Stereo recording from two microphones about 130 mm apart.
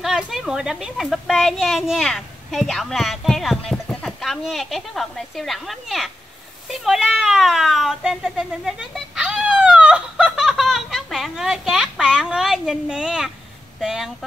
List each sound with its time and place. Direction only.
0.0 s a woman's voice: centre (ahead or behind)